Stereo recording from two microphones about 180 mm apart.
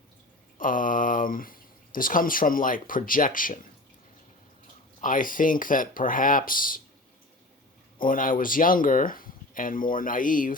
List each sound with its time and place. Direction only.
0.6 s speech: 50° left (ahead or behind)
4.9 s speech: 50° left (ahead or behind)
7.9 s speech: 50° left (ahead or behind)